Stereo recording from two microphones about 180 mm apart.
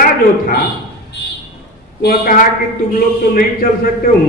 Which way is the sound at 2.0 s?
55° left (ahead or behind).